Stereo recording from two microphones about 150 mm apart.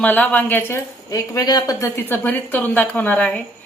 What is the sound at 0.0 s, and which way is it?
A woman's voice, 10° left (ahead or behind).